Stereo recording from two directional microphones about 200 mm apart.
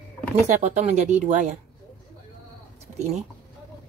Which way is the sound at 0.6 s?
35° right (ahead or behind).